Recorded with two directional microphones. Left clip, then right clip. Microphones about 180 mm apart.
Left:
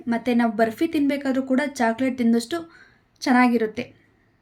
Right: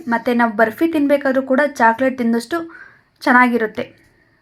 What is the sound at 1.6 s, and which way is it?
Speech, 50° left (ahead or behind).